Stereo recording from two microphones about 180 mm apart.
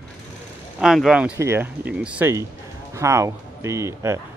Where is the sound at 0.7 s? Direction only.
Centre (ahead or behind).